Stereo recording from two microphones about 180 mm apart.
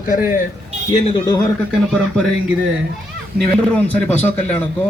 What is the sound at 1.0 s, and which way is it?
Speech, 25° left (ahead or behind).